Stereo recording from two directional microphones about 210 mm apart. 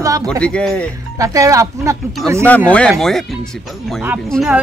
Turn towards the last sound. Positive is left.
turn(degrees=0)  # may be behind; listen again after turning